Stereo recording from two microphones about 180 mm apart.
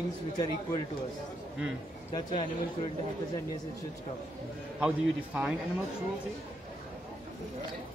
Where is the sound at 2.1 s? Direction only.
25° left (ahead or behind).